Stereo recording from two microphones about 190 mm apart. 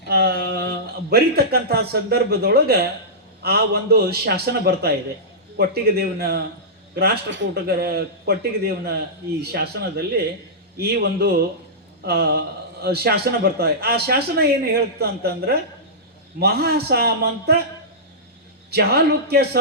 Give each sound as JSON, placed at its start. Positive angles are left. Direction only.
{"t": 0.1, "sound": "a man's voice", "side_deg": -55}
{"t": 18.7, "sound": "a man's voice", "side_deg": -55}